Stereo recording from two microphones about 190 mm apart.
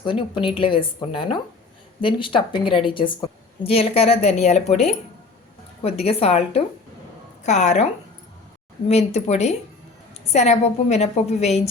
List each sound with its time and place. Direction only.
0.0 s a woman's voice: 25° left (ahead or behind)
8.9 s a woman's voice: 35° left (ahead or behind)